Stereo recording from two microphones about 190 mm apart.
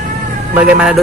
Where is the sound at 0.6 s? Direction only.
5° right (ahead or behind).